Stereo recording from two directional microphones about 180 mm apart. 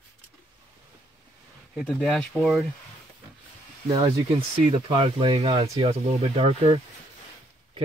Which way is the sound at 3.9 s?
30° right (ahead or behind).